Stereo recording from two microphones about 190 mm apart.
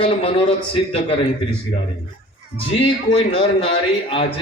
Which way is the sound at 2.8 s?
30° left (ahead or behind).